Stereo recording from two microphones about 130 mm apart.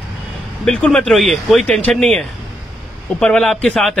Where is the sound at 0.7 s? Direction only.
5° left (ahead or behind).